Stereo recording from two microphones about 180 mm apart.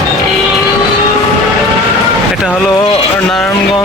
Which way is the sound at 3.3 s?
5° left (ahead or behind).